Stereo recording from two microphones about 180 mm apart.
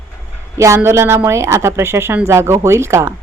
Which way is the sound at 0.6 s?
15° right (ahead or behind).